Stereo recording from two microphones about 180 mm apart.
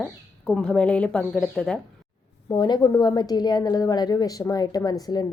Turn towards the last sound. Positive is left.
turn(degrees=20)  # may be behind; listen again after turning